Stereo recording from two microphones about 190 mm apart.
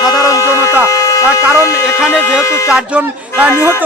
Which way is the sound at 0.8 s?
15° left (ahead or behind).